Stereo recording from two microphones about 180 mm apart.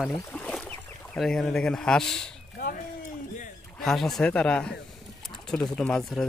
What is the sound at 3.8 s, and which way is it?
Speech, centre (ahead or behind).